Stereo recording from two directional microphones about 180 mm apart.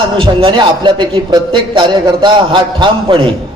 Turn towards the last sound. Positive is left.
turn(degrees=-25)  # may be behind; listen again after turning